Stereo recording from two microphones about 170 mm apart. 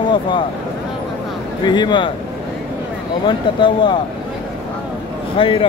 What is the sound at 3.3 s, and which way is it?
Speech, 25° left (ahead or behind).